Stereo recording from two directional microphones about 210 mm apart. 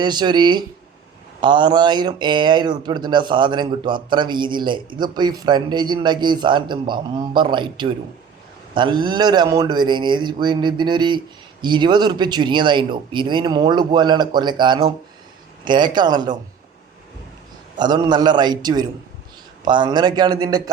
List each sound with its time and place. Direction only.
0.0 s speech: 20° right (ahead or behind)
17.7 s speech: 20° right (ahead or behind)